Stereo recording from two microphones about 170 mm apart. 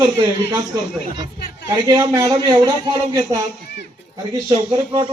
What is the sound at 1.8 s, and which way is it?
A man's voice, 15° right (ahead or behind).